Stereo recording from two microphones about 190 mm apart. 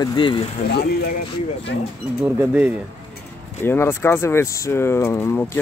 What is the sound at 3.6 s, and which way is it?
Speech, 10° left (ahead or behind).